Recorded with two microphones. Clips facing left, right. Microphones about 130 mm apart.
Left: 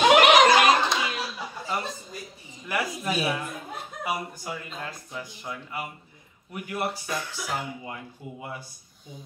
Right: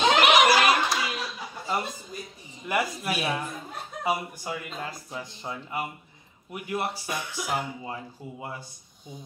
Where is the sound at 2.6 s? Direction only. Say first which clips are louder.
Right 2 dB; 20° right (ahead or behind).